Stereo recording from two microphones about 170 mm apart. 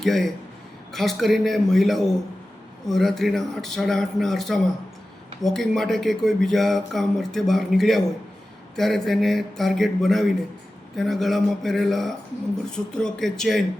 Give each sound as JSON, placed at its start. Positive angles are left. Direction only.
{"t": 0.0, "sound": "speech", "side_deg": 0}